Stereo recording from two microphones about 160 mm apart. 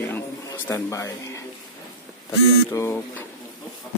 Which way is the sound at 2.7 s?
15° left (ahead or behind).